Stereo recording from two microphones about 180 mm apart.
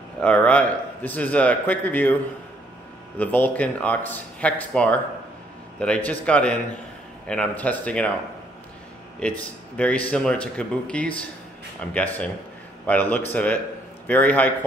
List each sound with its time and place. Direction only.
0.2 s speech: 5° left (ahead or behind)
3.2 s speech: 10° left (ahead or behind)
9.2 s speech: 5° left (ahead or behind)